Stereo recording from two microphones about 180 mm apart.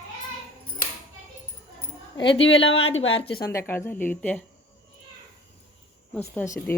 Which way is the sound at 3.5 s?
15° left (ahead or behind).